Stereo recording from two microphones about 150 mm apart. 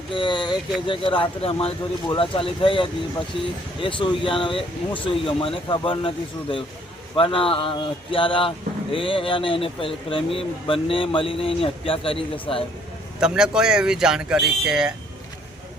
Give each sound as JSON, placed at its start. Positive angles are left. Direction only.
{"t": 0.1, "sound": "speech", "side_deg": 30}
{"t": 13.1, "sound": "speech", "side_deg": -5}